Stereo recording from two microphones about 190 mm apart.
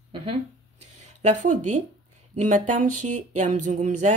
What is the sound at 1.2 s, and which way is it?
Speech, 40° right (ahead or behind).